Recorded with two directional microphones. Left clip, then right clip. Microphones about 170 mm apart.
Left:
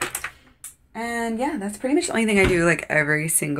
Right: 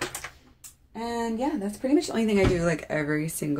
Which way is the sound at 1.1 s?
5° right (ahead or behind).